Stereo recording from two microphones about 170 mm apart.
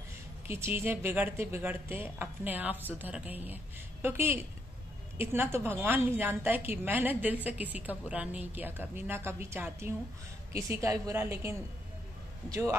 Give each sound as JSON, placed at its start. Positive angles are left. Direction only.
{"t": 0.5, "sound": "a woman's voice", "side_deg": -15}